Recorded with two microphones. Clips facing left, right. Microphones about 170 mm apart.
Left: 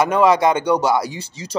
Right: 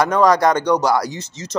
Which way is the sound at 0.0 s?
5° left (ahead or behind).